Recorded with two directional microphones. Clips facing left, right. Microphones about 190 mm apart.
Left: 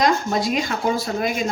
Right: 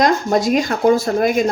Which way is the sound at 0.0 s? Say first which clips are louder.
Right 4 dB; 45° right (ahead or behind).